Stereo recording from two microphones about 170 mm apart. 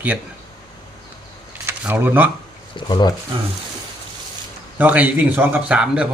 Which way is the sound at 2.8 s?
25° left (ahead or behind).